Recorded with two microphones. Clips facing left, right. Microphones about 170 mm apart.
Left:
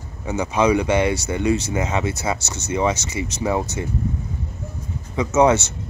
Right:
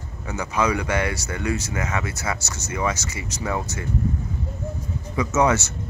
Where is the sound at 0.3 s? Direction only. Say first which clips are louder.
Left 5 dB; 25° left (ahead or behind).